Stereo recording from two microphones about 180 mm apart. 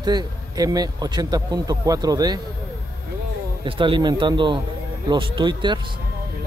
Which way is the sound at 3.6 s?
30° right (ahead or behind).